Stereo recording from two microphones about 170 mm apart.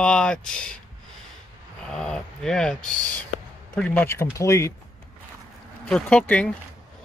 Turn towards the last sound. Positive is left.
turn(degrees=5)  # may be behind; listen again after turning